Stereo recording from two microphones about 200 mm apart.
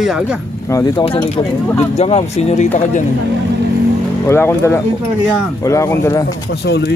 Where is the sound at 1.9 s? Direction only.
30° left (ahead or behind).